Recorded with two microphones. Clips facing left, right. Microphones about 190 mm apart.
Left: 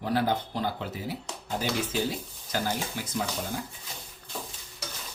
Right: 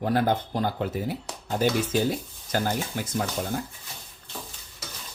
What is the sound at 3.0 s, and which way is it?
Speech, 50° right (ahead or behind).